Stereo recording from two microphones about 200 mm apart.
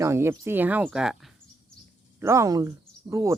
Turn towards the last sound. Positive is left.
turn(degrees=-15)  # may be behind; listen again after turning